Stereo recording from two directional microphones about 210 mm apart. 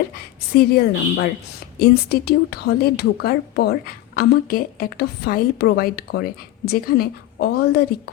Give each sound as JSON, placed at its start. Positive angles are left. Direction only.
{"t": 0.5, "sound": "speech", "side_deg": 45}